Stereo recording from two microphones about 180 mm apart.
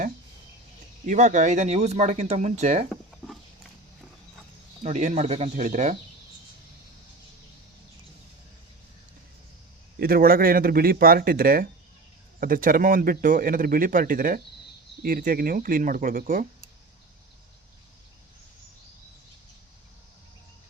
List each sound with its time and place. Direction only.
1.0 s speech: 45° right (ahead or behind)
2.9 s a sound: centre (ahead or behind)
4.8 s speech: 40° right (ahead or behind)
10.0 s speech: 55° right (ahead or behind)